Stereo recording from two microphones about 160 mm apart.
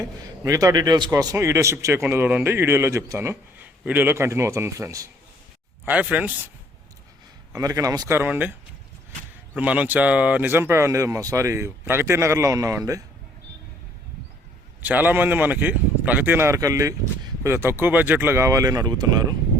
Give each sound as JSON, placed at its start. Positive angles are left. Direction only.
{"t": 0.0, "sound": "a man's voice", "side_deg": -20}
{"t": 7.5, "sound": "speech", "side_deg": -20}
{"t": 9.6, "sound": "a man's voice", "side_deg": -10}
{"t": 14.8, "sound": "a man's voice", "side_deg": -10}